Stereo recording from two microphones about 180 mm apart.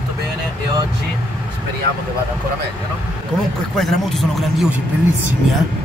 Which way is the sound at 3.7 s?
Centre (ahead or behind).